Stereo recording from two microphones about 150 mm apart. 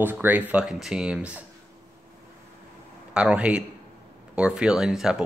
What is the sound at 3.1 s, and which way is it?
Speech, 5° right (ahead or behind).